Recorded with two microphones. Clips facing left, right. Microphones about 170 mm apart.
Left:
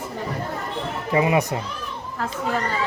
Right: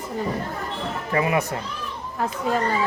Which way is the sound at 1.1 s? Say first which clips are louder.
Left 3 dB; 20° left (ahead or behind).